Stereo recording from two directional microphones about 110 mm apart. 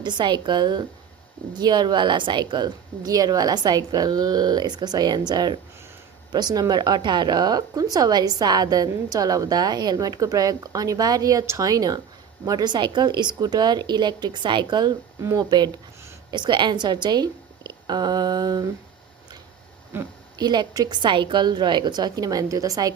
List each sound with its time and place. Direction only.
0.0 s a woman's voice: 45° right (ahead or behind)
15.2 s speech: 25° right (ahead or behind)
15.4 s a woman's voice: 40° right (ahead or behind)
19.9 s speech: 20° right (ahead or behind)
20.4 s a woman's voice: 40° right (ahead or behind)